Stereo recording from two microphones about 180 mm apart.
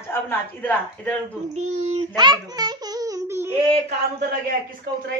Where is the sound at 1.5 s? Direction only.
40° right (ahead or behind).